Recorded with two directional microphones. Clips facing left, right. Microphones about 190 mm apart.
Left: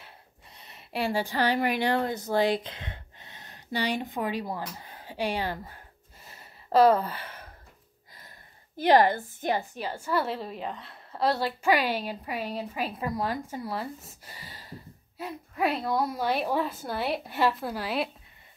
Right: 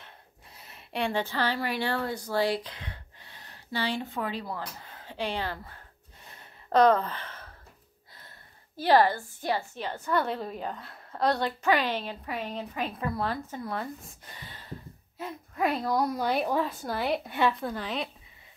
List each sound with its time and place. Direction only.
0.6 s a woman's voice: centre (ahead or behind)
6.2 s a sound: 5° left (ahead or behind)
8.7 s a woman's voice: 20° left (ahead or behind)